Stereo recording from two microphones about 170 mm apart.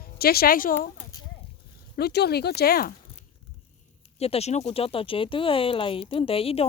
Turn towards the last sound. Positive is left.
turn(degrees=35)  # may be behind; listen again after turning